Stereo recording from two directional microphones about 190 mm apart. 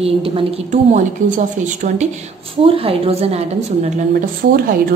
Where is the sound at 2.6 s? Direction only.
30° right (ahead or behind).